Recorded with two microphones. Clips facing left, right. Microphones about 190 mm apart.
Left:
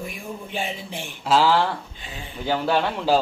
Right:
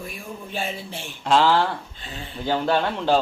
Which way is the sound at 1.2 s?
5° left (ahead or behind).